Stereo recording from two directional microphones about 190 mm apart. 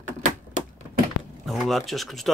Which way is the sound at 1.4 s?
Centre (ahead or behind).